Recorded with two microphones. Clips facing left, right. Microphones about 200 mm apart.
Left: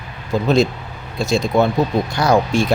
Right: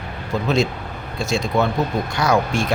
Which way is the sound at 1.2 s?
35° left (ahead or behind).